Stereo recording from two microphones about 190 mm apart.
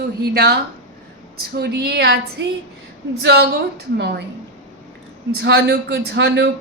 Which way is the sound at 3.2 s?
60° right (ahead or behind).